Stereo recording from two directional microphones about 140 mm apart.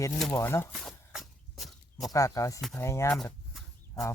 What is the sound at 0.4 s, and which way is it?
Speech, 15° left (ahead or behind).